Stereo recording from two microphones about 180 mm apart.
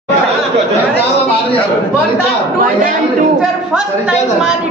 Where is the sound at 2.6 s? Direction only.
50° right (ahead or behind).